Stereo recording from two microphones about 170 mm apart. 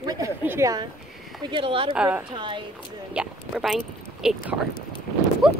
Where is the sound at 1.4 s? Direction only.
30° right (ahead or behind).